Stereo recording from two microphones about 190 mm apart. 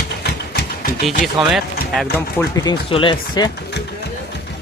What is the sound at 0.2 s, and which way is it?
Sewing machine, 60° left (ahead or behind).